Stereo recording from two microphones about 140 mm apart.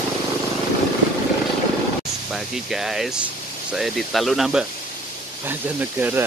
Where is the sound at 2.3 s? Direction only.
5° right (ahead or behind).